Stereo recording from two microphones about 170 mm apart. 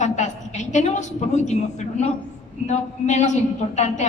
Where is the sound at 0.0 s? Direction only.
45° left (ahead or behind).